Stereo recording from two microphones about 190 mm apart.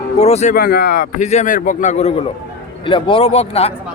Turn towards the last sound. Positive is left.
turn(degrees=30)  # may be behind; listen again after turning